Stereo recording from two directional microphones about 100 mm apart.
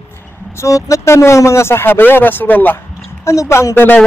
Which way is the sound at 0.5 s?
30° left (ahead or behind).